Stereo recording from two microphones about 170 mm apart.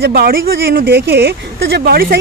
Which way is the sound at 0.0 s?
60° right (ahead or behind).